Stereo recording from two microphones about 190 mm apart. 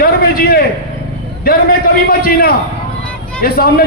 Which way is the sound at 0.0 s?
50° left (ahead or behind).